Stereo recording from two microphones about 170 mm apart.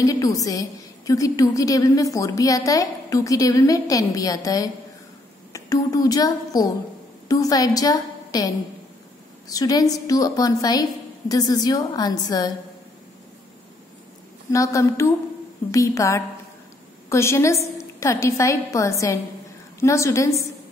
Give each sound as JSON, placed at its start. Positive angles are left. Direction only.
{"t": 0.0, "sound": "a woman's voice", "side_deg": 20}
{"t": 14.5, "sound": "a woman's voice", "side_deg": 20}